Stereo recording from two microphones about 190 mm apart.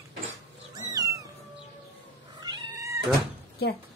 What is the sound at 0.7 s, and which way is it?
Cat, 20° right (ahead or behind).